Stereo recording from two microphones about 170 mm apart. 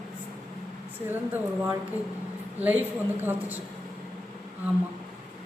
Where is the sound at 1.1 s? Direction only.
10° right (ahead or behind).